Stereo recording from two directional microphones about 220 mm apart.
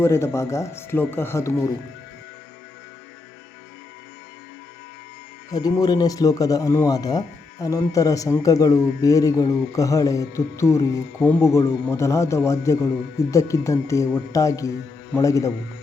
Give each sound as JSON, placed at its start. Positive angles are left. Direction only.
{"t": 0.0, "sound": "speech", "side_deg": 10}
{"t": 5.5, "sound": "speech", "side_deg": 15}